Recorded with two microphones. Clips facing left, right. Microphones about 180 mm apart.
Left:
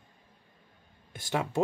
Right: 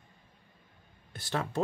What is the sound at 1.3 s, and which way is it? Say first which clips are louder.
Speech: left 3 dB; 15° left (ahead or behind).